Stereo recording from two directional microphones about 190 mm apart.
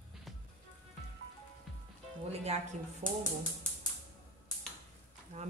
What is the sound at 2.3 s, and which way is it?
Speech, 35° right (ahead or behind).